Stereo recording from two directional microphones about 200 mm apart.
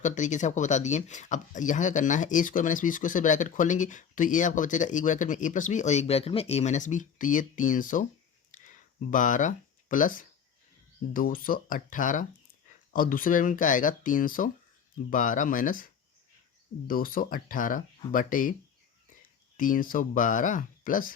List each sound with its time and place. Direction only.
0.0 s speech: 40° left (ahead or behind)
8.5 s a sound: 40° left (ahead or behind)
11.1 s speech: 45° left (ahead or behind)
19.5 s speech: 40° left (ahead or behind)